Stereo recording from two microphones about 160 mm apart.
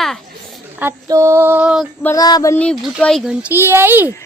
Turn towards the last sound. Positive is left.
turn(degrees=-10)  # may be behind; listen again after turning